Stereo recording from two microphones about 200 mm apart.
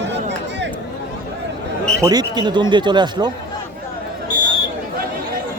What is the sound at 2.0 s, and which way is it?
Speech, 20° right (ahead or behind).